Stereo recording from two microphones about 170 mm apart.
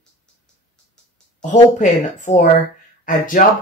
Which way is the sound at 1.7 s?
45° left (ahead or behind).